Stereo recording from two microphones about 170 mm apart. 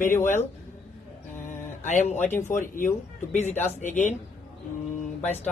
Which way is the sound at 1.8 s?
45° left (ahead or behind).